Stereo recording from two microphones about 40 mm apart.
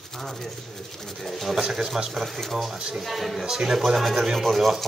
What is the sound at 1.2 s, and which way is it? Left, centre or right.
Speech, centre.